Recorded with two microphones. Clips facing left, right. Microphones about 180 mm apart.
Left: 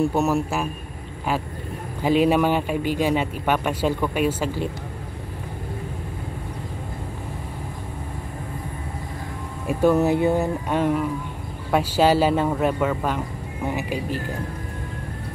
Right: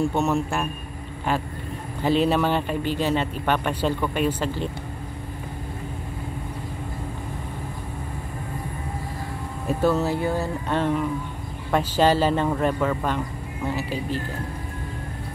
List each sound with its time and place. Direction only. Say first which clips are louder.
0.1 s speech: left 2 dB; 5° left (ahead or behind)
2.0 s speech: left 2 dB; 10° left (ahead or behind)
9.7 s speech: left 4 dB; 15° left (ahead or behind)